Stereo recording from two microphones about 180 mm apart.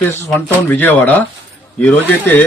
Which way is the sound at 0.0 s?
10° left (ahead or behind).